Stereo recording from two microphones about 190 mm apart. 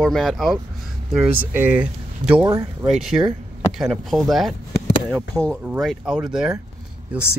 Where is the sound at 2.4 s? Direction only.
15° right (ahead or behind).